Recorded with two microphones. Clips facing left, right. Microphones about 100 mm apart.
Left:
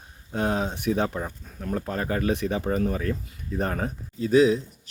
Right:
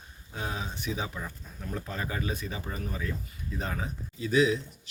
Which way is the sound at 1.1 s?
45° left (ahead or behind).